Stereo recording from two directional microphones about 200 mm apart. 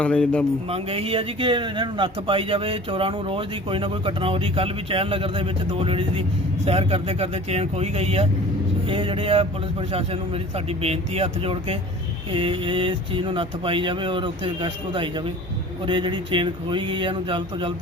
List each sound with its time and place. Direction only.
0.0 s speech: 5° left (ahead or behind)
0.7 s a man's voice: 30° right (ahead or behind)